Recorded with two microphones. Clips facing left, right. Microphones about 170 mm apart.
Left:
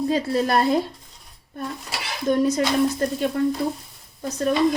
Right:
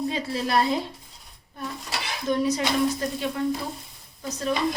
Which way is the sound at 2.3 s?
50° left (ahead or behind).